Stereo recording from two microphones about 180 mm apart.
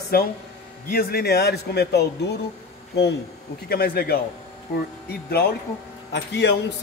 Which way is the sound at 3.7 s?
55° left (ahead or behind).